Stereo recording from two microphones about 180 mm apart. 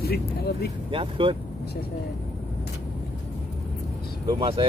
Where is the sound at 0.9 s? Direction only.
30° right (ahead or behind).